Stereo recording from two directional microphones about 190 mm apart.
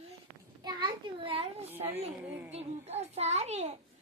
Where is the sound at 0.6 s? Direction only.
25° right (ahead or behind).